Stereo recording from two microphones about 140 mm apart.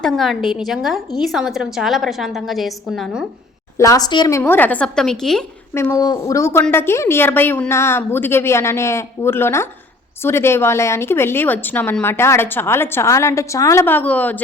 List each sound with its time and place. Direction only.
0.0 s a woman's voice: centre (ahead or behind)
3.8 s a woman's voice: 25° left (ahead or behind)
4.4 s a woman's voice: 15° left (ahead or behind)
5.7 s a woman's voice: 20° left (ahead or behind)